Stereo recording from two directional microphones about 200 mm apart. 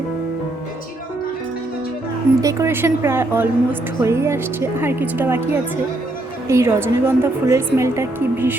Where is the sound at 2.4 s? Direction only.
15° right (ahead or behind).